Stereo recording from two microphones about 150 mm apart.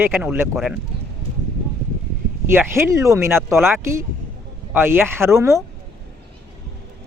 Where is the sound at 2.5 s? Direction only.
15° right (ahead or behind).